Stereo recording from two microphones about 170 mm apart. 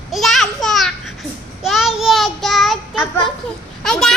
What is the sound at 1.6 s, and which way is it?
Child singing, centre (ahead or behind).